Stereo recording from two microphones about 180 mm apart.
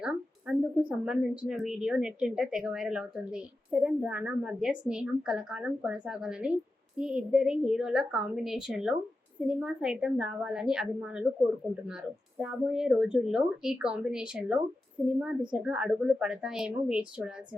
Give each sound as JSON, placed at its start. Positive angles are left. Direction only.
{"t": 0.0, "sound": "a woman's voice", "side_deg": -5}
{"t": 12.4, "sound": "a woman's voice", "side_deg": -5}